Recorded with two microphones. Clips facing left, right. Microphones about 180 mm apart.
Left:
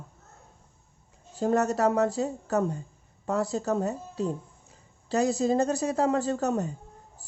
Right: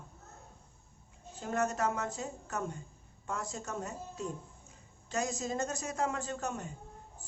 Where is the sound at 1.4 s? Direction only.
40° left (ahead or behind).